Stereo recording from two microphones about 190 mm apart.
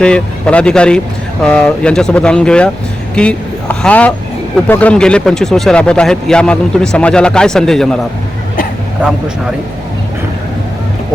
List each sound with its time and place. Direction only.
0.0 s speech: 5° left (ahead or behind)